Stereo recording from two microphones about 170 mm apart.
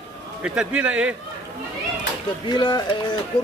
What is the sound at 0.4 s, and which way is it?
Speech, 5° right (ahead or behind).